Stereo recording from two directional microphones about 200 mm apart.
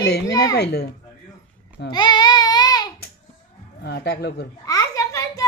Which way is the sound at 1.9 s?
20° left (ahead or behind).